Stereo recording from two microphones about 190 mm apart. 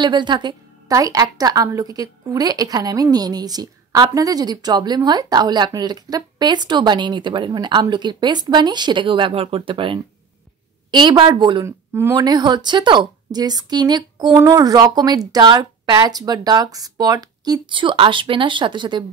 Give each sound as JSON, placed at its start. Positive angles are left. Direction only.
{"t": 0.0, "sound": "a woman's voice", "side_deg": -25}
{"t": 11.6, "sound": "a woman's voice", "side_deg": -15}